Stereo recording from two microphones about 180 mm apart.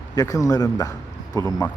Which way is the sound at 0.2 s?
20° left (ahead or behind).